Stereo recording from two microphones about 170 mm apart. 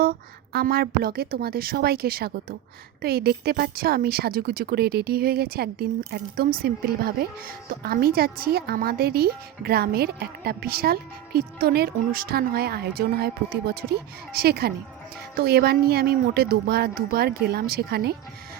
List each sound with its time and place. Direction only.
0.0 s a woman's voice: 60° right (ahead or behind)